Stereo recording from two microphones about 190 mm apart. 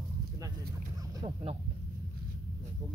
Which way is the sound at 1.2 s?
30° right (ahead or behind).